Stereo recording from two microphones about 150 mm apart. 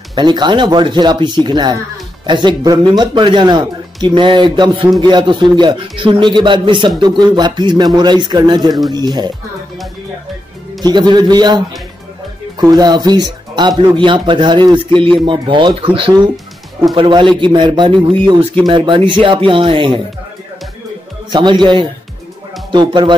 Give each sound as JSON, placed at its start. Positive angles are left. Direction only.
{"t": 0.1, "sound": "speech", "side_deg": -30}
{"t": 10.8, "sound": "speech", "side_deg": -30}
{"t": 21.3, "sound": "speech", "side_deg": -30}